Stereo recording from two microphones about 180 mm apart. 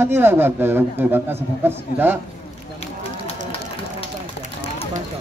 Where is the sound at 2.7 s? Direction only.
35° left (ahead or behind).